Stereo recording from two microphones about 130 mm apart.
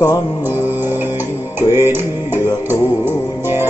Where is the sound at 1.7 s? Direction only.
20° right (ahead or behind).